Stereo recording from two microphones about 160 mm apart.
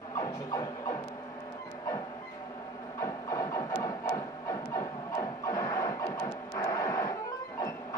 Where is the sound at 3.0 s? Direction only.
20° left (ahead or behind).